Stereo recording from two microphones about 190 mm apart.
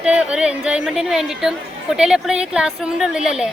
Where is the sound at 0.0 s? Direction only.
5° right (ahead or behind).